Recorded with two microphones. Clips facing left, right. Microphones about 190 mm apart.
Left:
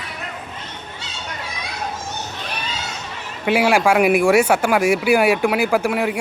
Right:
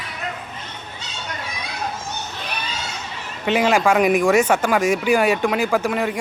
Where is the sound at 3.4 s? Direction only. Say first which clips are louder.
Left 1 dB; 10° left (ahead or behind).